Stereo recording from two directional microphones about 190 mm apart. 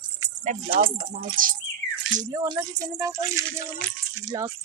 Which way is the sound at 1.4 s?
45° right (ahead or behind).